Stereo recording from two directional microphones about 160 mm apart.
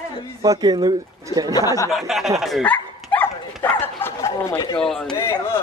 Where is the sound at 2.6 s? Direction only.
10° left (ahead or behind).